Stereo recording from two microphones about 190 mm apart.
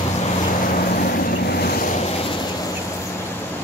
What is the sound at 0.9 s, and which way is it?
Vehicle, 50° left (ahead or behind).